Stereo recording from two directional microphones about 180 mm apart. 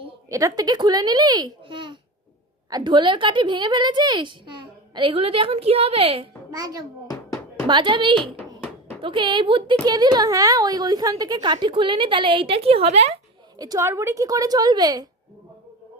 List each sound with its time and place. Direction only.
0.3 s a woman's voice: 15° right (ahead or behind)
7.1 s knock: 15° left (ahead or behind)
7.7 s a woman's voice: 25° right (ahead or behind)
8.4 s a sound: 10° left (ahead or behind)
9.0 s a woman's voice: 30° right (ahead or behind)
13.6 s a woman's voice: 20° right (ahead or behind)